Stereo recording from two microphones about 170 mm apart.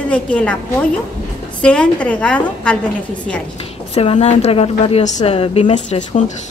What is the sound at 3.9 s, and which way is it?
A woman's voice, 40° left (ahead or behind).